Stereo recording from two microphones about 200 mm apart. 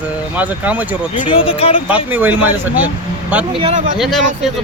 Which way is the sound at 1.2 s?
25° left (ahead or behind).